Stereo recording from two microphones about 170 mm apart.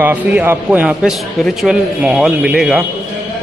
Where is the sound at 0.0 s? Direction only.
10° right (ahead or behind).